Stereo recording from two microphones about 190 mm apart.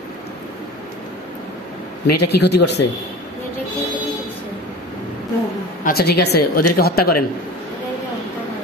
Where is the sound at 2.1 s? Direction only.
60° left (ahead or behind).